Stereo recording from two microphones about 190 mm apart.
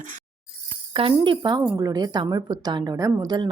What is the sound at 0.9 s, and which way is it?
A woman's voice, 25° right (ahead or behind).